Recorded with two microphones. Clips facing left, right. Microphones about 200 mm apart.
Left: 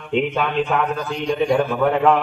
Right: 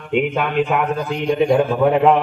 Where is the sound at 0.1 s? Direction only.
10° right (ahead or behind).